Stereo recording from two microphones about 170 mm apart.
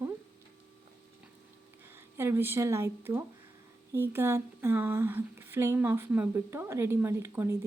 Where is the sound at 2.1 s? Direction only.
15° right (ahead or behind).